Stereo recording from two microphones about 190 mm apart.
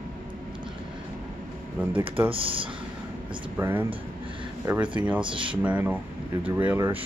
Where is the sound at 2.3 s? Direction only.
30° right (ahead or behind).